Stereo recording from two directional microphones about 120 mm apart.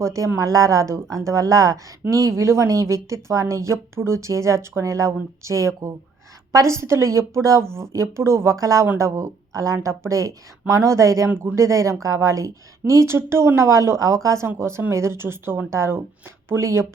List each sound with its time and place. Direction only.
0.0 s speech: 25° right (ahead or behind)